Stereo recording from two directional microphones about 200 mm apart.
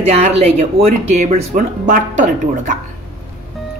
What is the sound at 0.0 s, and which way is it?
A woman's voice, 35° right (ahead or behind).